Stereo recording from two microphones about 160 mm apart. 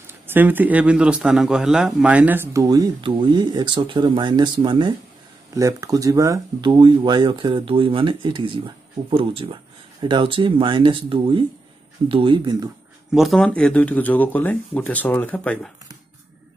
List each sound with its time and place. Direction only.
0.0 s a man's voice: 10° right (ahead or behind); by 12.6 s 30° right (ahead or behind)
13.1 s speech: centre (ahead or behind)